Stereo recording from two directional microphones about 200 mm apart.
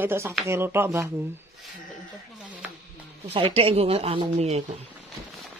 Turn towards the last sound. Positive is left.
turn(degrees=-35)  # may be behind; listen again after turning